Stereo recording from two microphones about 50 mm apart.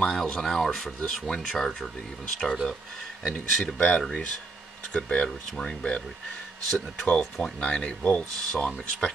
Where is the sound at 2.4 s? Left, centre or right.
Centre.